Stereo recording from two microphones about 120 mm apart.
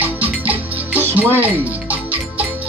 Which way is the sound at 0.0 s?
15° right (ahead or behind).